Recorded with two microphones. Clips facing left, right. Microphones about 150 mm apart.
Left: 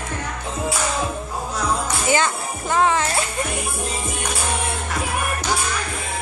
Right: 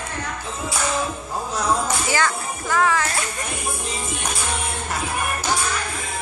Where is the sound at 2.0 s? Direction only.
20° left (ahead or behind).